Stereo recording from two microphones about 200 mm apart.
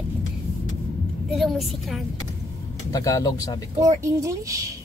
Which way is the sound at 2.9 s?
15° left (ahead or behind).